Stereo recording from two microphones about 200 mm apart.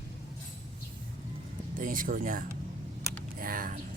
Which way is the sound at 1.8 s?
40° right (ahead or behind).